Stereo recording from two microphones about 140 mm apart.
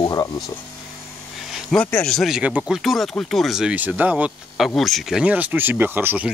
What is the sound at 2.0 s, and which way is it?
Speech, centre (ahead or behind).